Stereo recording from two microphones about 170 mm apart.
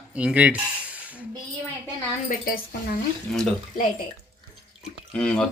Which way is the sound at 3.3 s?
Centre (ahead or behind).